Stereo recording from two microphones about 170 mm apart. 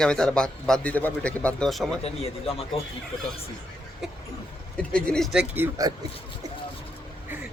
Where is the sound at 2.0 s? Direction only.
35° left (ahead or behind).